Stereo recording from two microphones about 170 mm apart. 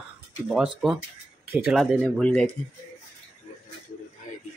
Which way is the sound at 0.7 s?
5° right (ahead or behind).